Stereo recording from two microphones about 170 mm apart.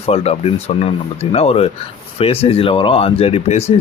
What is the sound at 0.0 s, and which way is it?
Speech, 35° left (ahead or behind).